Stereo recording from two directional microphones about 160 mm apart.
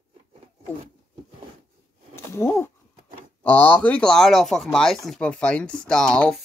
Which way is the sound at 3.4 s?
10° left (ahead or behind).